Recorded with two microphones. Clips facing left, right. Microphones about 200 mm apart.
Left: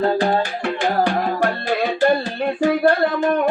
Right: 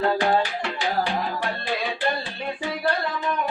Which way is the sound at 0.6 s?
50° left (ahead or behind).